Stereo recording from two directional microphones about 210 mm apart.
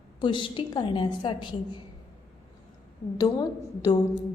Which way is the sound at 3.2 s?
20° left (ahead or behind).